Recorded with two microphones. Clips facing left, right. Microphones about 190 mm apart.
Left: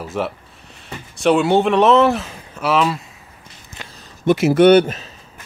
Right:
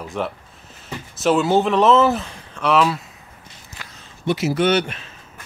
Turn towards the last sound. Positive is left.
turn(degrees=40)  # may be behind; listen again after turning